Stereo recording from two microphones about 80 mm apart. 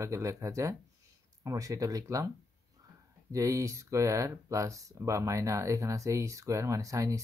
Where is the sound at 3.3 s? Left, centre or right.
Right.